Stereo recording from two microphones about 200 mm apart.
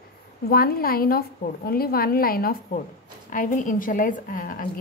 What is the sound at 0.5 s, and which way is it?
A woman's voice, 50° left (ahead or behind).